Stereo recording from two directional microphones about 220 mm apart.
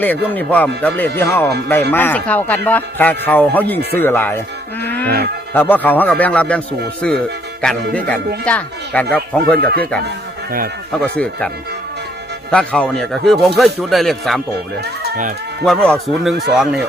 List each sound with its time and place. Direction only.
0.0 s speech: 5° left (ahead or behind)
4.8 s music: 10° left (ahead or behind)
5.0 s speech: 45° right (ahead or behind)
5.5 s speech: 10° left (ahead or behind)
9.6 s speech: 45° right (ahead or behind)
11.0 s speech: 5° left (ahead or behind)
14.8 s speech: 50° right (ahead or behind)
15.6 s speech: 5° left (ahead or behind)